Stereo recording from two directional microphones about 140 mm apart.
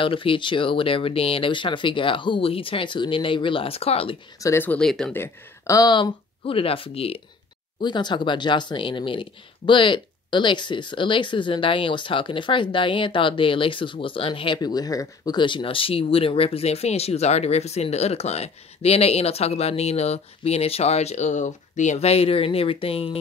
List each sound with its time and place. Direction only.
0.0 s speech: 40° left (ahead or behind)
4.4 s speech: 20° left (ahead or behind)
4.6 s speech: 5° left (ahead or behind)
5.1 s speech: 20° left (ahead or behind); by 7.2 s 45° left (ahead or behind)
7.8 s speech: 35° left (ahead or behind)